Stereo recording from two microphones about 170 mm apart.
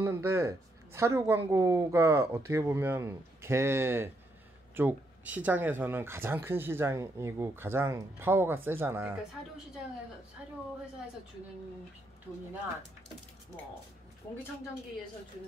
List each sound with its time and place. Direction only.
0.0 s speech: 15° right (ahead or behind)